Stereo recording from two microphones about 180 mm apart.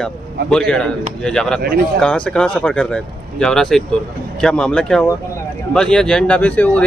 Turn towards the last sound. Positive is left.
turn(degrees=10)  # may be behind; listen again after turning